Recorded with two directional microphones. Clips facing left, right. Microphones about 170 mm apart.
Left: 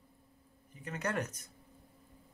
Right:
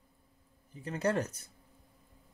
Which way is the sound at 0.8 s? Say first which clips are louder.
Right 5 dB; 30° right (ahead or behind).